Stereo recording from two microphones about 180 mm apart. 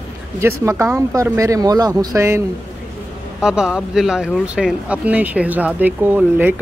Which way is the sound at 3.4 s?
5° right (ahead or behind).